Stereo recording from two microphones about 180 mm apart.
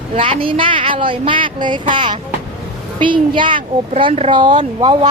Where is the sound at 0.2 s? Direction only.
30° right (ahead or behind).